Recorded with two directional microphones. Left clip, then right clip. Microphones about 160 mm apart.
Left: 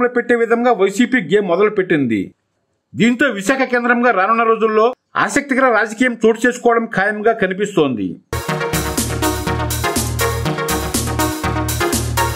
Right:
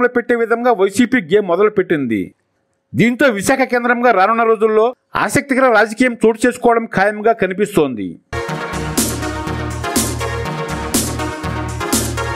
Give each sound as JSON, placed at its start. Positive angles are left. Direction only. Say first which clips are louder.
{"t": 0.0, "sound": "speech", "louder": "even", "side_deg": -35}